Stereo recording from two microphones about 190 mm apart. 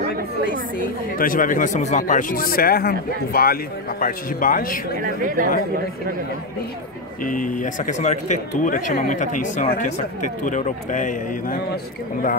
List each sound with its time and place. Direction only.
1.1 s speech: 45° left (ahead or behind)
5.0 s speech: 45° right (ahead or behind)
7.2 s speech: 45° left (ahead or behind)